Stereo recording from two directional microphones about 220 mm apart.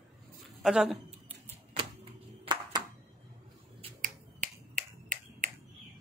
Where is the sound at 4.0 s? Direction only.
40° right (ahead or behind).